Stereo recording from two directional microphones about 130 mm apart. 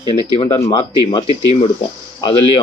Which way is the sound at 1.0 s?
45° left (ahead or behind).